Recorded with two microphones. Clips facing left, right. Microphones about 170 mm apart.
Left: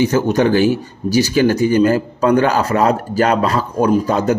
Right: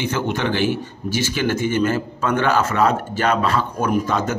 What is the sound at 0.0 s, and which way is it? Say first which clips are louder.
Speech: left 8 dB; 40° left (ahead or behind).